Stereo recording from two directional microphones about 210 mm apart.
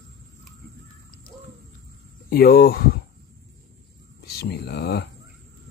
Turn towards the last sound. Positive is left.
turn(degrees=50)  # may be behind; listen again after turning